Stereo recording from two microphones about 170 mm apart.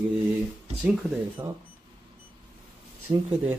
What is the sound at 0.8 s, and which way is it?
Speech, 5° right (ahead or behind).